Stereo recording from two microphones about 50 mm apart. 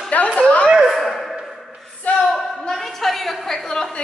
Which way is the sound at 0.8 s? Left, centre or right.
Centre.